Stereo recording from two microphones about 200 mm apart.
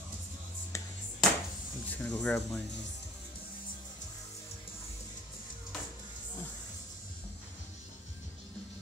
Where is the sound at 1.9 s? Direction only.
10° left (ahead or behind).